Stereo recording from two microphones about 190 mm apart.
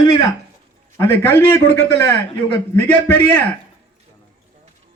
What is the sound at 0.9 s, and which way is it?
A man's voice, 15° left (ahead or behind).